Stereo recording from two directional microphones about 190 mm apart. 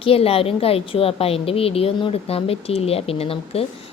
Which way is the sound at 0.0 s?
30° left (ahead or behind).